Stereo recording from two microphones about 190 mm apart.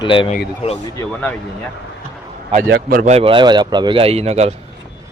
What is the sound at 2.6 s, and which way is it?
Speech, 60° right (ahead or behind).